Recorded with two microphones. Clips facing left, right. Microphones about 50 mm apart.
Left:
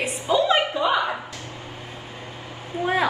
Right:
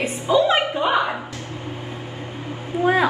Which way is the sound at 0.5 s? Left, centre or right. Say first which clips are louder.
Right 1 dB; right.